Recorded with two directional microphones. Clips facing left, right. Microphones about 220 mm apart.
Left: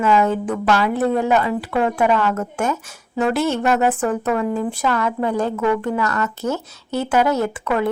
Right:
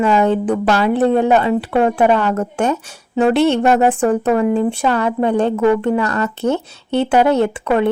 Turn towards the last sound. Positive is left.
turn(degrees=-30)  # may be behind; listen again after turning